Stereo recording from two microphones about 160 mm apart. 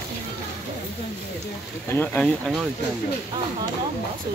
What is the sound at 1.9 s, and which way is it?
Speech, 5° left (ahead or behind).